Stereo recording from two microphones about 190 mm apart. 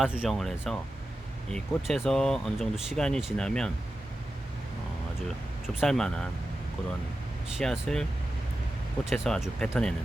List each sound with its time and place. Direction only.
0.0 s speech: centre (ahead or behind)
5.6 s speech: centre (ahead or behind)
7.6 s speech: 5° left (ahead or behind)
9.0 s speech: centre (ahead or behind)